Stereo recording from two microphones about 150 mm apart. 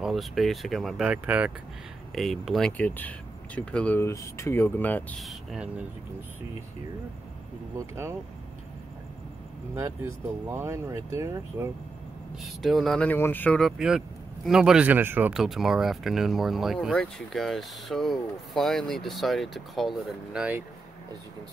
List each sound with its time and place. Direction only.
0.0 s speech: centre (ahead or behind)
2.1 s speech: centre (ahead or behind)
5.2 s speech: centre (ahead or behind)
7.7 s speech: 20° right (ahead or behind)
9.8 s speech: 15° right (ahead or behind)
12.6 s speech: centre (ahead or behind)